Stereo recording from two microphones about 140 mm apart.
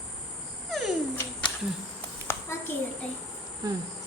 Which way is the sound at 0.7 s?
Centre (ahead or behind).